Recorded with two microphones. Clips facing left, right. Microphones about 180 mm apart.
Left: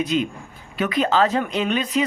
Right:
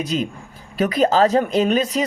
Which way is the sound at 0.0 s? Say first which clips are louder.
Left 1 dB; 40° right (ahead or behind).